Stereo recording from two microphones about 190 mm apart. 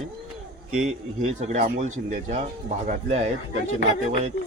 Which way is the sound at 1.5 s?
40° right (ahead or behind).